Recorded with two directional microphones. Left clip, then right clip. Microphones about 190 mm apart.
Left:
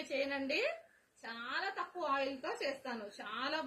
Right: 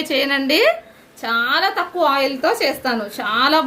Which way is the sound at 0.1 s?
60° right (ahead or behind).